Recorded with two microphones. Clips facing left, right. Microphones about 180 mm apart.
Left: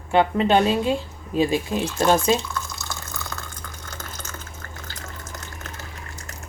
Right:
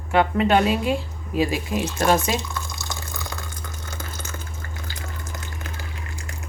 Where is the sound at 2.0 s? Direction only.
15° right (ahead or behind).